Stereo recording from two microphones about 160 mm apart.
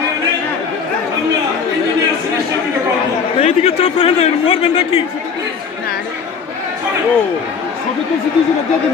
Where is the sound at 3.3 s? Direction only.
40° left (ahead or behind).